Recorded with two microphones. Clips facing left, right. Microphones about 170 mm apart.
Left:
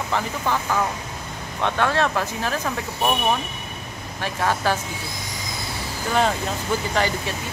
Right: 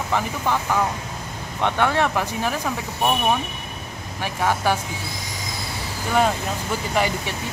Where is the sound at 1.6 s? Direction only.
15° right (ahead or behind).